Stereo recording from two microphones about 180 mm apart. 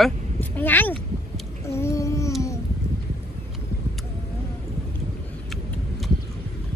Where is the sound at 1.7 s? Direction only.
15° left (ahead or behind).